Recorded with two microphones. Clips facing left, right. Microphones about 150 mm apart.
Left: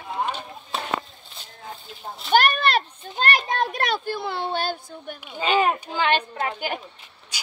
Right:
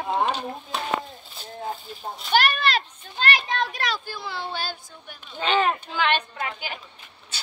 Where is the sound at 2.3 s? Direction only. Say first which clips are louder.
Left 3 dB; 50° left (ahead or behind).